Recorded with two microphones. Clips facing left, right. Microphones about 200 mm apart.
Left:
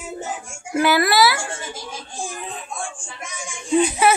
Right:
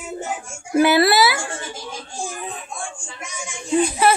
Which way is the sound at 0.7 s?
20° right (ahead or behind).